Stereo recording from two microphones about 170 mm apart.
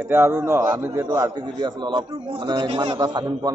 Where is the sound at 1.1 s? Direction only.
25° right (ahead or behind).